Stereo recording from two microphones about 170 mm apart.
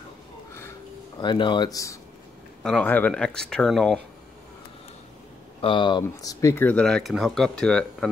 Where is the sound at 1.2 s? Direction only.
25° left (ahead or behind).